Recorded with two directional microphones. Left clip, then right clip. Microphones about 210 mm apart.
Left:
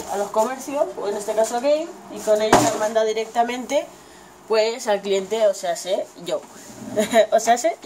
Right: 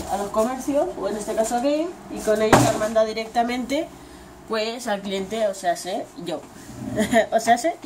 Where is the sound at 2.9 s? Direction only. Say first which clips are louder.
Even; 25° left (ahead or behind).